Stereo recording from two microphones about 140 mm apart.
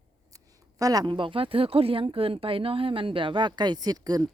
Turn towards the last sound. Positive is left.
turn(degrees=-25)  # may be behind; listen again after turning